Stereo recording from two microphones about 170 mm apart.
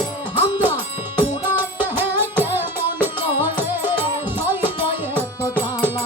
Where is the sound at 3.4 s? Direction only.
10° right (ahead or behind).